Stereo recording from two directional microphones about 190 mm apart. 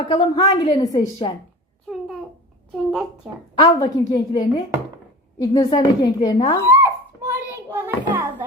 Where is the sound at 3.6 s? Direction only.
20° left (ahead or behind).